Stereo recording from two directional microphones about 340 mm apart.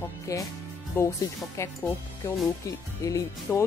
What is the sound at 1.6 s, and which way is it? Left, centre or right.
Speech, centre.